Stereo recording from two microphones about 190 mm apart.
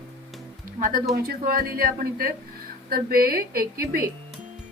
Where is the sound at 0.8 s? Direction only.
45° right (ahead or behind).